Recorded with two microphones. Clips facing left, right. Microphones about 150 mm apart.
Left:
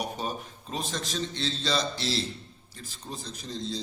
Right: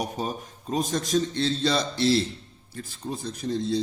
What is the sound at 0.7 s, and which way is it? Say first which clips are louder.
A man's voice: right 9 dB; 45° right (ahead or behind).